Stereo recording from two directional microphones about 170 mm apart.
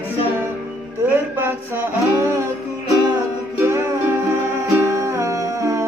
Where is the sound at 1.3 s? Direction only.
15° right (ahead or behind).